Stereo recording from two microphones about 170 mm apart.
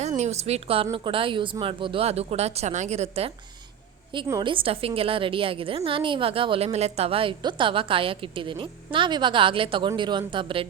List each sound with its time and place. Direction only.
0.2 s a woman's voice: 40° right (ahead or behind)
4.3 s a woman's voice: 25° right (ahead or behind)